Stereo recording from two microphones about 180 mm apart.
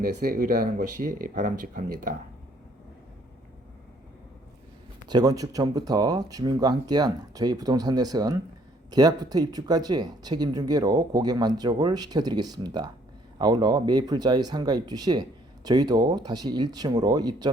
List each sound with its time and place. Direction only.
0.0 s speech: 55° right (ahead or behind)
5.0 s speech: 20° right (ahead or behind)